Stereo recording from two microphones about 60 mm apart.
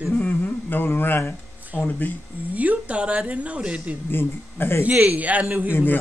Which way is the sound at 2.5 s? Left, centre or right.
Right.